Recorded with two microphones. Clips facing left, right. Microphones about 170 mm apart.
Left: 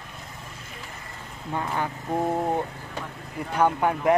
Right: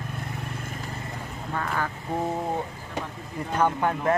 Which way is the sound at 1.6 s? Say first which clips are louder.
Left 1 dB; 20° left (ahead or behind).